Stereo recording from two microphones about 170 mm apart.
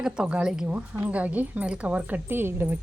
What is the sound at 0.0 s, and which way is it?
Speech, 5° right (ahead or behind).